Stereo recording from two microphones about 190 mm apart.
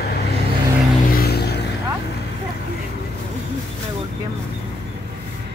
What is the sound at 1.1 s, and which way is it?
Music, 55° left (ahead or behind).